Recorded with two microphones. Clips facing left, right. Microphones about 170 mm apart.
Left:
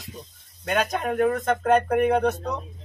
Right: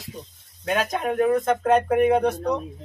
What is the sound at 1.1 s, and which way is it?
Speech, 15° right (ahead or behind).